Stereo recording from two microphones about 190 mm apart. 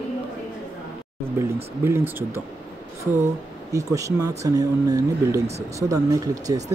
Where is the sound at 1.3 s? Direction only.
15° right (ahead or behind).